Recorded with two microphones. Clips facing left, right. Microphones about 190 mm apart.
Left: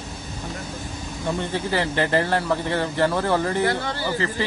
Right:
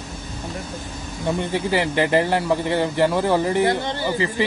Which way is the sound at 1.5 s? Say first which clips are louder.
Right 3 dB; 15° right (ahead or behind).